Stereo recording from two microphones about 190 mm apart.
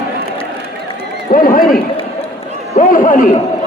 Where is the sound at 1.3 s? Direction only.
45° left (ahead or behind).